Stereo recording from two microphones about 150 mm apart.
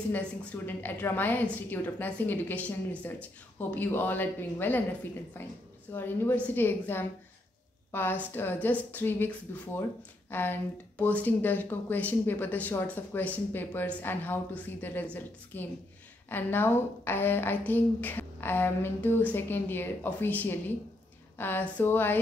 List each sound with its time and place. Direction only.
0.1 s speech: 10° left (ahead or behind)
10.3 s speech: 15° left (ahead or behind)